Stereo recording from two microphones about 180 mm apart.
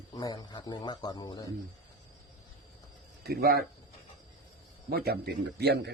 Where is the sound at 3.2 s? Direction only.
60° right (ahead or behind).